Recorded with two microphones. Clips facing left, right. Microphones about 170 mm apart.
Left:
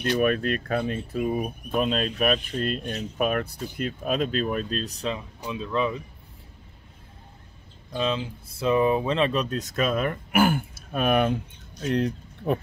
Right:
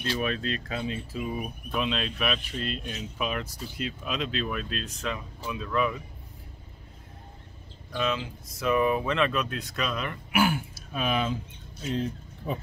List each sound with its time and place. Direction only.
0.1 s speech: 55° left (ahead or behind); by 6.0 s 25° left (ahead or behind)
7.9 s speech: 30° left (ahead or behind); by 12.5 s 70° left (ahead or behind)